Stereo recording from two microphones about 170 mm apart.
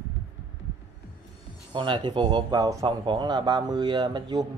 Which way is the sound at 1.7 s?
30° right (ahead or behind).